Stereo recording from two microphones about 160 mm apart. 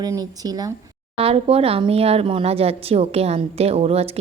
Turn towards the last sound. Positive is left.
turn(degrees=-40)  # may be behind; listen again after turning